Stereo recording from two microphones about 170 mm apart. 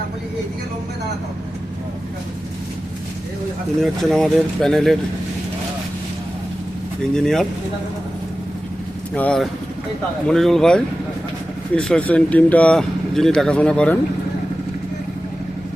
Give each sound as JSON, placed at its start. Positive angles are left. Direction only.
{"t": 3.8, "sound": "speech", "side_deg": 0}
{"t": 7.1, "sound": "speech", "side_deg": 5}
{"t": 9.1, "sound": "speech", "side_deg": 5}